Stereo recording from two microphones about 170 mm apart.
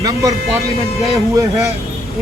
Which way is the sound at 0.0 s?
20° right (ahead or behind).